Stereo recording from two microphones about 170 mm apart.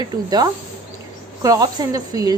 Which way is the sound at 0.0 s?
25° right (ahead or behind).